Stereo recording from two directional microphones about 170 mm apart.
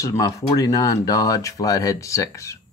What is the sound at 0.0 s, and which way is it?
Speech, 20° left (ahead or behind).